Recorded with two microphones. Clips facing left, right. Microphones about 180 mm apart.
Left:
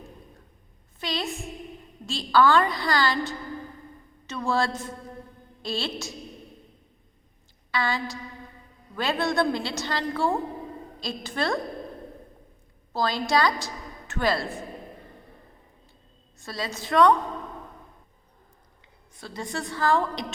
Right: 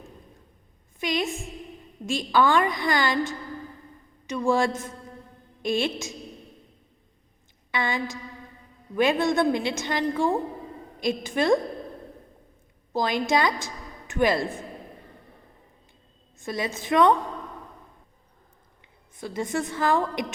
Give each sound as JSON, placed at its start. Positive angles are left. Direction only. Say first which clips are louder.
{"t": 0.9, "sound": "a woman's voice", "louder": "right 4 dB", "side_deg": -15}
{"t": 7.7, "sound": "a woman's voice", "louder": "even", "side_deg": -20}
{"t": 12.9, "sound": "a woman's voice", "louder": "right 1 dB", "side_deg": -15}
{"t": 16.4, "sound": "a woman's voice", "louder": "right 4 dB", "side_deg": -20}
{"t": 19.1, "sound": "a woman's voice", "louder": "right 5 dB", "side_deg": -20}